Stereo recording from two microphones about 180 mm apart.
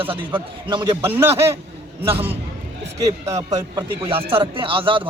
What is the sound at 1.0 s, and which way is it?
Speech, 15° right (ahead or behind).